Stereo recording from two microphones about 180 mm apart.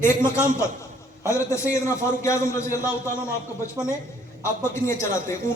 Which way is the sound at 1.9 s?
15° left (ahead or behind).